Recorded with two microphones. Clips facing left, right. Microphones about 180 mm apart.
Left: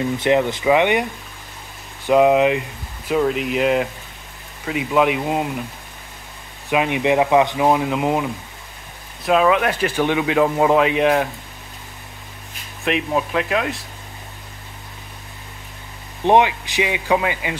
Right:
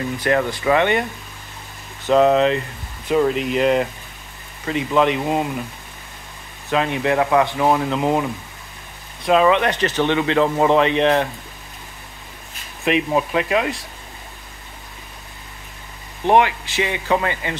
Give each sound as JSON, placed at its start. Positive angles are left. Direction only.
{"t": 0.2, "sound": "speech", "side_deg": 20}
{"t": 2.0, "sound": "speech", "side_deg": 10}
{"t": 6.7, "sound": "speech", "side_deg": 15}
{"t": 12.8, "sound": "speech", "side_deg": 0}
{"t": 16.3, "sound": "speech", "side_deg": 15}